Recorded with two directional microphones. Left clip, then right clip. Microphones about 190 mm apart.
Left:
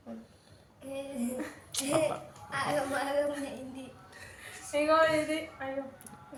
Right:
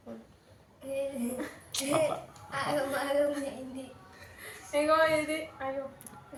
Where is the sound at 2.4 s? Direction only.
10° left (ahead or behind).